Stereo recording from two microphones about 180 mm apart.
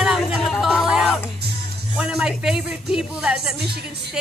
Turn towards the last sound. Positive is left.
turn(degrees=-5)  # may be behind; listen again after turning